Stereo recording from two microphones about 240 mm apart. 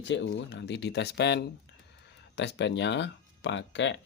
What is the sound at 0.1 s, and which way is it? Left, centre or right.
Speech, left.